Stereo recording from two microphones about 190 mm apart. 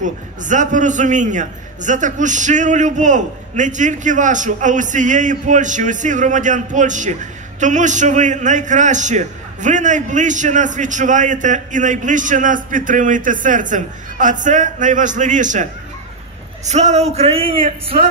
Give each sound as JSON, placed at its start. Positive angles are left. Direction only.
{"t": 0.0, "sound": "a man's voice", "side_deg": -40}